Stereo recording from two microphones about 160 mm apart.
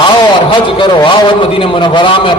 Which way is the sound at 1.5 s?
30° left (ahead or behind).